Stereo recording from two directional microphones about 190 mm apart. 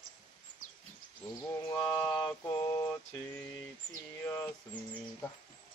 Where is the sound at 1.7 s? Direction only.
20° left (ahead or behind).